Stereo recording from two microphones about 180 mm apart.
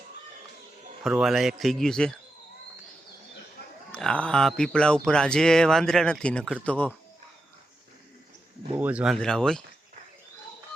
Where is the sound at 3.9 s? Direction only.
5° left (ahead or behind).